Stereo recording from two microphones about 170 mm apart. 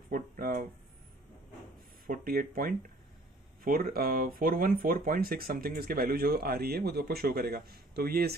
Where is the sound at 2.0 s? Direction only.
60° right (ahead or behind).